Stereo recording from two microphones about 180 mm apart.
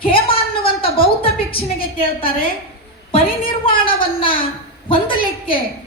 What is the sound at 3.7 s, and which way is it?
A woman's voice, 30° left (ahead or behind).